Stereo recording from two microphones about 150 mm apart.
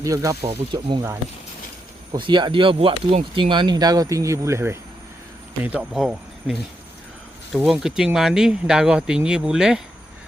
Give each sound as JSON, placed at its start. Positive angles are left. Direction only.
{"t": 0.0, "sound": "speech", "side_deg": -20}
{"t": 0.4, "sound": "speech", "side_deg": -35}
{"t": 2.1, "sound": "speech", "side_deg": -30}